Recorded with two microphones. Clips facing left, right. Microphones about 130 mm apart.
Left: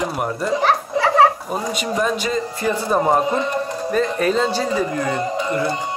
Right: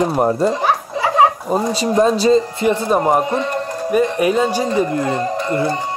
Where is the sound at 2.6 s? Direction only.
15° right (ahead or behind).